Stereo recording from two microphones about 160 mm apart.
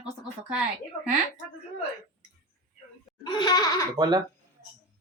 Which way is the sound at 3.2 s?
25° left (ahead or behind).